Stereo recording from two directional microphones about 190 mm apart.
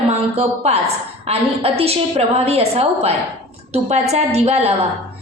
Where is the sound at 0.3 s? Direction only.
35° right (ahead or behind).